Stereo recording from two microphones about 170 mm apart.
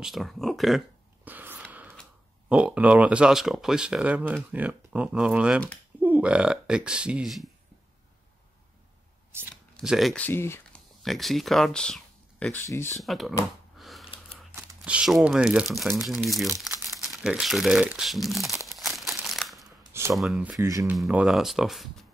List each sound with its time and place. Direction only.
0.0 s speech: centre (ahead or behind)
1.7 s a sound: 10° right (ahead or behind)
2.5 s speech: 5° right (ahead or behind)
9.8 s speech: centre (ahead or behind)
11.0 s speech: centre (ahead or behind)
12.6 s speech: 15° left (ahead or behind)
13.0 s speech: centre (ahead or behind)
13.7 s a sound: centre (ahead or behind)
14.5 s speech: 5° right (ahead or behind)
18.7 s crumpling: centre (ahead or behind)
19.9 s speech: 15° right (ahead or behind)
20.2 s speech: 5° right (ahead or behind)
20.5 s speech: 20° right (ahead or behind)
20.9 s speech: 5° right (ahead or behind)